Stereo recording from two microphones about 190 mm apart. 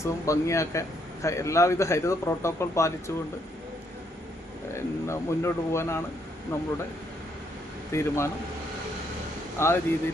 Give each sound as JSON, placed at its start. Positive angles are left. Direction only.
{"t": 0.0, "sound": "a man's voice", "side_deg": 15}
{"t": 4.7, "sound": "a man's voice", "side_deg": 15}
{"t": 7.9, "sound": "a man's voice", "side_deg": 15}
{"t": 9.6, "sound": "a man's voice", "side_deg": 15}